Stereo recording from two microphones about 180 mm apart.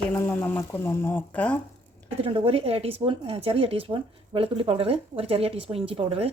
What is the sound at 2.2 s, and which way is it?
A woman's voice, 30° right (ahead or behind).